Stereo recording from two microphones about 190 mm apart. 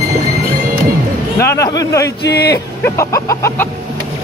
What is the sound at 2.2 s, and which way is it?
Speech, 60° left (ahead or behind).